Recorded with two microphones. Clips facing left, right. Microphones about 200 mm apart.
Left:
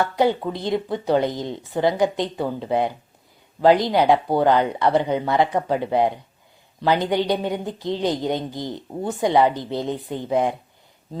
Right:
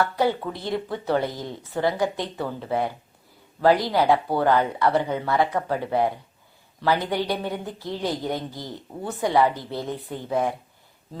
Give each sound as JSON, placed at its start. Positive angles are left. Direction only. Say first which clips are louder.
{"t": 0.0, "sound": "a man's voice", "louder": "left 3 dB", "side_deg": 20}